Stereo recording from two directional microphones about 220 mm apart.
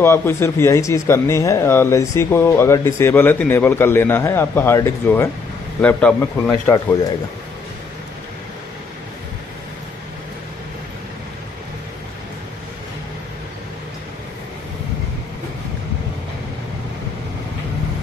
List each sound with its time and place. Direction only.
0.0 s a man's voice: 10° left (ahead or behind)
6.7 s speech: 15° left (ahead or behind)